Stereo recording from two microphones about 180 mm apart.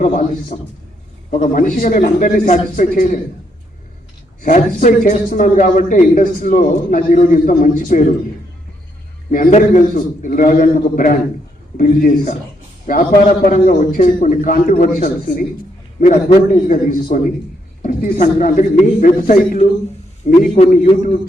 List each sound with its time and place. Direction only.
0.0 s a man's voice: 45° left (ahead or behind)
4.4 s a man's voice: 45° left (ahead or behind)
9.3 s a man's voice: 45° left (ahead or behind)